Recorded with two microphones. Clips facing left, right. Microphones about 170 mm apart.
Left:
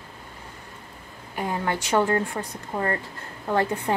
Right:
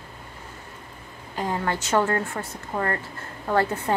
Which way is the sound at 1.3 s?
15° left (ahead or behind).